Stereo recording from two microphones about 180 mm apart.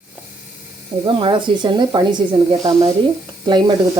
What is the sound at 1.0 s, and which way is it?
Speech, 30° right (ahead or behind).